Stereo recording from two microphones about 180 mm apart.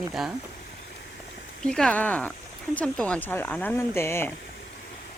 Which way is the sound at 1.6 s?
5° left (ahead or behind).